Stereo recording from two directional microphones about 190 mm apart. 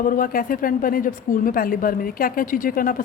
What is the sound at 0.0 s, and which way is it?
Speech, 45° left (ahead or behind).